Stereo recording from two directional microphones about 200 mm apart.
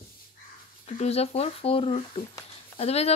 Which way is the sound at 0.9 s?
30° left (ahead or behind).